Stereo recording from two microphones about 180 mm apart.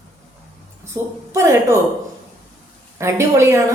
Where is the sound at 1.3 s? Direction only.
15° right (ahead or behind).